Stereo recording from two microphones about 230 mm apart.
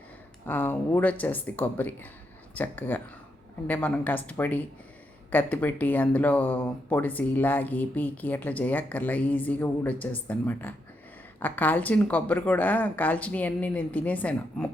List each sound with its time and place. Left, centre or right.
0.4 s speech: centre